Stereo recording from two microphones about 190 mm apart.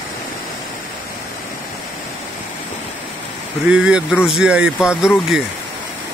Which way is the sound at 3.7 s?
5° right (ahead or behind).